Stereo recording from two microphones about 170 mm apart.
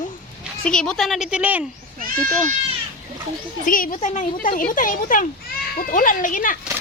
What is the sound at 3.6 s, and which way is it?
Speech, 55° left (ahead or behind).